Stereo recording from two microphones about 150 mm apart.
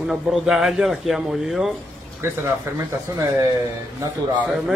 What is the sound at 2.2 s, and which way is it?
Speech, 15° right (ahead or behind).